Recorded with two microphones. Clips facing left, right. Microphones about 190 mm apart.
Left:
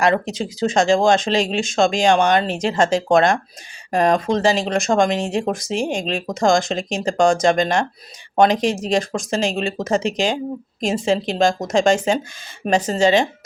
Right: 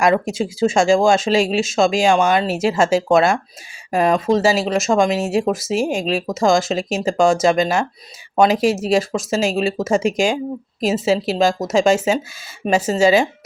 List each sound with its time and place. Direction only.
0.0 s speech: 10° right (ahead or behind)